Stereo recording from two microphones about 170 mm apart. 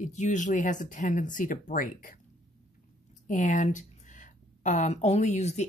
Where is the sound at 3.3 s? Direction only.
50° left (ahead or behind).